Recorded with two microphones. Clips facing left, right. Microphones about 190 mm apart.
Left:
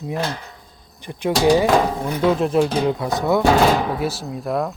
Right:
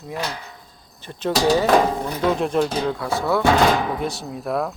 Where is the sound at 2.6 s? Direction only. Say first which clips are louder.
Left 3 dB; 20° left (ahead or behind).